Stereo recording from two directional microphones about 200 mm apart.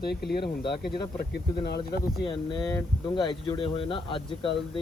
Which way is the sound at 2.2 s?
20° left (ahead or behind).